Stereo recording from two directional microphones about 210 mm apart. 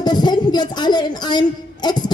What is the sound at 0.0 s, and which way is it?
Speech, 20° left (ahead or behind).